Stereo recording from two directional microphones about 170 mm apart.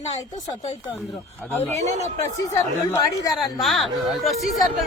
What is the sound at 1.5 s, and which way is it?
Speech, 10° left (ahead or behind).